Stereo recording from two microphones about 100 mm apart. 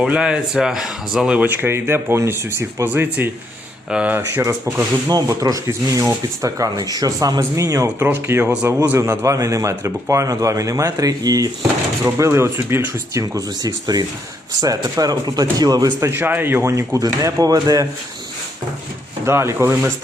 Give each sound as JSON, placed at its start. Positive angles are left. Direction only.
{"t": 0.0, "sound": "speech", "side_deg": -10}
{"t": 1.5, "sound": "speech", "side_deg": -25}
{"t": 4.2, "sound": "speech", "side_deg": -25}
{"t": 12.1, "sound": "speech", "side_deg": -30}
{"t": 13.2, "sound": "speech", "side_deg": -40}
{"t": 16.0, "sound": "speech", "side_deg": -20}
{"t": 19.2, "sound": "speech", "side_deg": -25}